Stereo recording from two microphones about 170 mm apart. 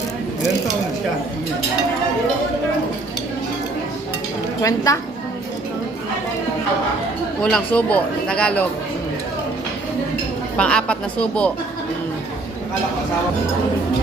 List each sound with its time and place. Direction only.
4.6 s a woman's voice: 20° left (ahead or behind)
7.4 s speech: 5° left (ahead or behind)
10.6 s speech: 5° left (ahead or behind)